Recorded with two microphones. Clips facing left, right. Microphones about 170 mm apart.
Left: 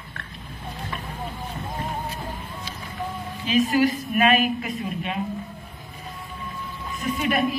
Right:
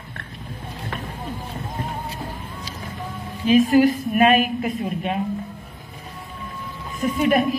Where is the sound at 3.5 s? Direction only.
50° right (ahead or behind).